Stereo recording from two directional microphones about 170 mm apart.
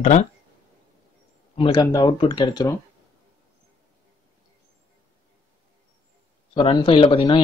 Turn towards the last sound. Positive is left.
turn(degrees=30)  # may be behind; listen again after turning